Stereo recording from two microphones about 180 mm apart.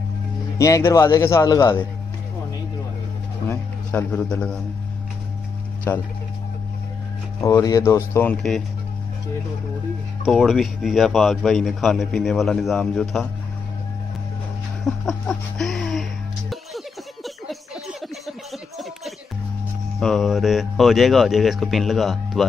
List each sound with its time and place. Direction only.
0.6 s speech: 15° left (ahead or behind)
3.4 s a man's voice: 10° left (ahead or behind)
5.9 s speech: 10° left (ahead or behind)
7.3 s speech: 20° left (ahead or behind); by 8.6 s 5° left (ahead or behind)
10.2 s a man's voice: centre (ahead or behind)
14.9 s music: 5° left (ahead or behind)
20.0 s a man's voice: centre (ahead or behind)